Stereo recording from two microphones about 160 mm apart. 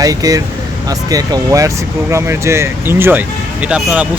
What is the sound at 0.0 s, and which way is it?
Speech, 20° right (ahead or behind).